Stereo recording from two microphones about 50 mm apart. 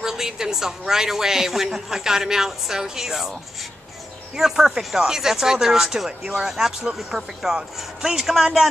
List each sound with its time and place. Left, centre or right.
0.0 s a woman's voice: centre
4.4 s a woman's voice: centre